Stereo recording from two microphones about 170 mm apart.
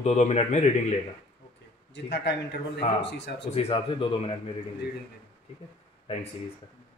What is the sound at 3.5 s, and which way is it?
Speech, 35° left (ahead or behind).